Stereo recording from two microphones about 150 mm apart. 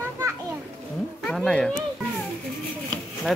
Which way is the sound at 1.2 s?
5° left (ahead or behind).